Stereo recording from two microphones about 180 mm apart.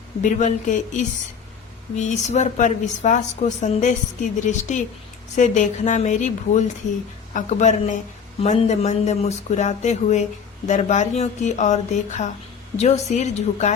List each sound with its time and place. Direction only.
0.2 s speech: 45° left (ahead or behind)